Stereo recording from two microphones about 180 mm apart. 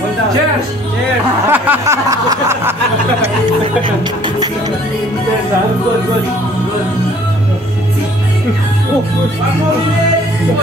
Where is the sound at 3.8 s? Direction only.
25° right (ahead or behind).